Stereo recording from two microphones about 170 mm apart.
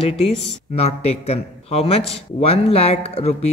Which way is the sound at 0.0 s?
35° left (ahead or behind).